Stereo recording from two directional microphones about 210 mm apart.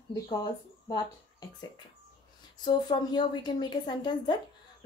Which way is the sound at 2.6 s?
20° left (ahead or behind).